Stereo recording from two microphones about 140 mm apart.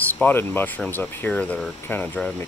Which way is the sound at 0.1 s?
15° left (ahead or behind).